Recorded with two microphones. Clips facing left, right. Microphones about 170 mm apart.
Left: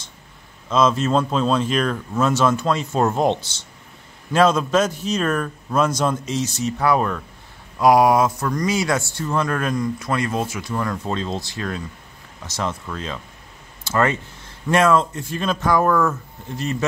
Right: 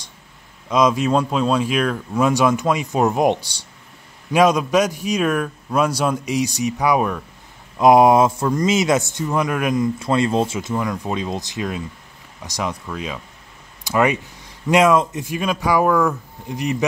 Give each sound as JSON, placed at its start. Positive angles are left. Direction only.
{"t": 0.7, "sound": "speech", "side_deg": -15}
{"t": 7.8, "sound": "speech", "side_deg": -25}
{"t": 9.9, "sound": "speech", "side_deg": -25}